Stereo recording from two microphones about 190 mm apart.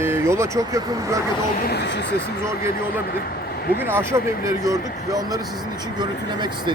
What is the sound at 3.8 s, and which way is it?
Speech, 15° right (ahead or behind).